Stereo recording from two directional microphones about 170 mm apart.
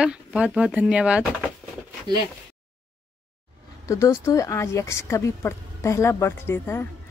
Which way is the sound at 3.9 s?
15° left (ahead or behind).